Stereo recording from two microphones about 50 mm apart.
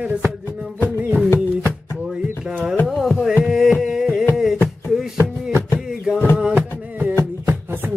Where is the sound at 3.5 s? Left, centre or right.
Centre.